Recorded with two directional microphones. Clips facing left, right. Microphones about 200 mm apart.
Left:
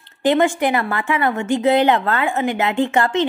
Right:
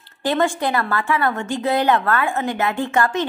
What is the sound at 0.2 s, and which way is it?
A woman's voice, 20° left (ahead or behind).